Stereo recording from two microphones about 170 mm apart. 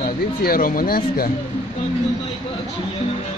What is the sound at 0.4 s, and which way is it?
Speech, 55° left (ahead or behind).